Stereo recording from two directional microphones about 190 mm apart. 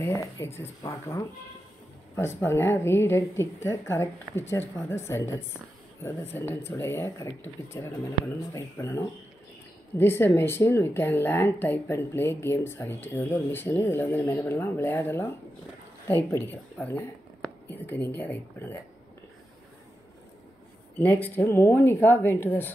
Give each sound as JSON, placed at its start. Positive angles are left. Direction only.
{"t": 0.0, "sound": "speech", "side_deg": 15}
{"t": 21.0, "sound": "speech", "side_deg": 10}